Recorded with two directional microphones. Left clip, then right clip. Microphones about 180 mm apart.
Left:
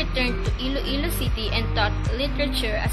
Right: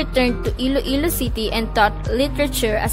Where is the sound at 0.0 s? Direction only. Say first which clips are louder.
Right 6 dB; 60° right (ahead or behind).